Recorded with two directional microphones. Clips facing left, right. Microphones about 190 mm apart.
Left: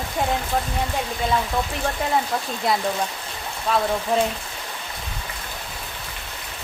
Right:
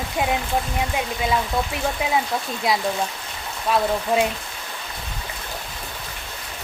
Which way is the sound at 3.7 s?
10° right (ahead or behind).